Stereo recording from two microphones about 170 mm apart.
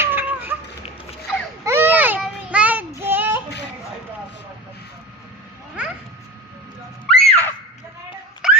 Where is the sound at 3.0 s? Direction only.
10° right (ahead or behind).